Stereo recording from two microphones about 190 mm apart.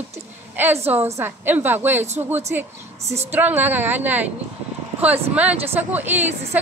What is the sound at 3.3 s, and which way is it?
A woman's voice, 10° right (ahead or behind).